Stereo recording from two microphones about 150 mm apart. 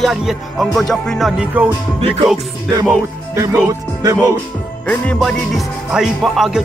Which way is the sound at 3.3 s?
20° right (ahead or behind).